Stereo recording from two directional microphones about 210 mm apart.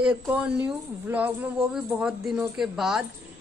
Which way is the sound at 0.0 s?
5° right (ahead or behind).